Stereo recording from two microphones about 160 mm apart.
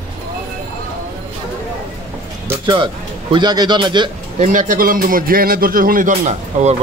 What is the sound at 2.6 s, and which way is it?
A man's voice, 30° right (ahead or behind).